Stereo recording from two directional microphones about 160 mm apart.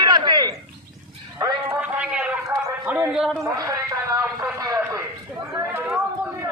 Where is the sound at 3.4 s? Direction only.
20° right (ahead or behind).